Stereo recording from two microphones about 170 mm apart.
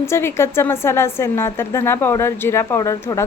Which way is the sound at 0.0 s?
15° left (ahead or behind).